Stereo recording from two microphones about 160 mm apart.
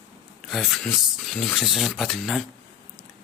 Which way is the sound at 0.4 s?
Centre (ahead or behind).